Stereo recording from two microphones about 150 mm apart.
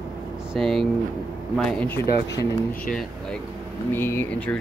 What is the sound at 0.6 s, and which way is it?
Speech, centre (ahead or behind).